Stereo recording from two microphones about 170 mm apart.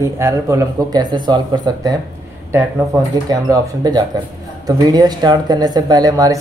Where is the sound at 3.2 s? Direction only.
20° right (ahead or behind).